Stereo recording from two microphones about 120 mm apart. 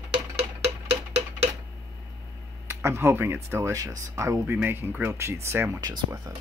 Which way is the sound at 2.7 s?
20° right (ahead or behind).